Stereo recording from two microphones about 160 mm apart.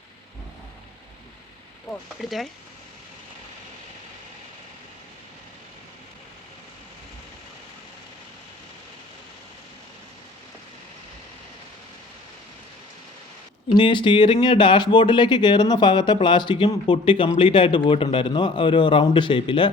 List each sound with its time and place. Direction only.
1.9 s speech: centre (ahead or behind)
13.7 s speech: 30° left (ahead or behind)